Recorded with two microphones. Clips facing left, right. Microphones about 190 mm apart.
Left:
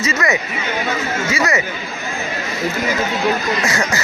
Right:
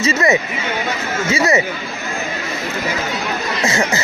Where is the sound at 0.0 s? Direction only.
25° right (ahead or behind).